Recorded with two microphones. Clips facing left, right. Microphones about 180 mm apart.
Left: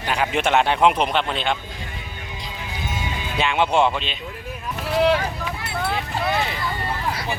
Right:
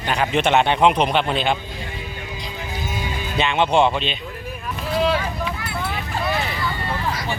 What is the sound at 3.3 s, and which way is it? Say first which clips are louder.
Speech: right 2 dB; 5° left (ahead or behind).